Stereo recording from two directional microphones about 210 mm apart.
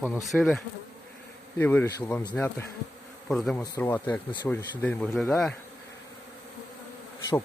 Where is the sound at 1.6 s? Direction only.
10° left (ahead or behind).